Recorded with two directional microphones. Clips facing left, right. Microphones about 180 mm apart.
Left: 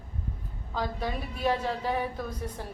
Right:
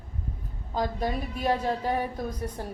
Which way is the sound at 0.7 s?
45° right (ahead or behind).